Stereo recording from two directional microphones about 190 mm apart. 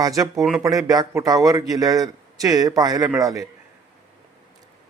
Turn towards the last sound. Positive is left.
turn(degrees=-15)  # may be behind; listen again after turning